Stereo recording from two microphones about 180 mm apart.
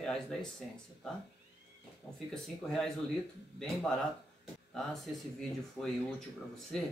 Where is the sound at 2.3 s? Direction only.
5° left (ahead or behind).